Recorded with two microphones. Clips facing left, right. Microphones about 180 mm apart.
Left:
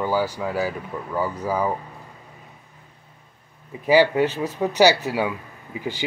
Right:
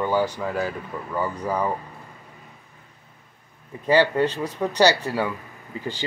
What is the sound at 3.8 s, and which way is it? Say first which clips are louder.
Speech: left 2 dB; 10° left (ahead or behind).